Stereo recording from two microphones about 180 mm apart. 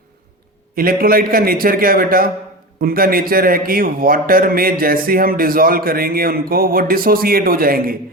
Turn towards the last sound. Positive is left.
turn(degrees=-55)  # may be behind; listen again after turning